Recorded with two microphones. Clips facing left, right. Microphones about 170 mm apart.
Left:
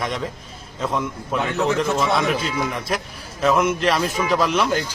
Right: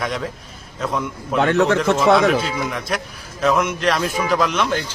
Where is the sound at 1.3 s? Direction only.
80° right.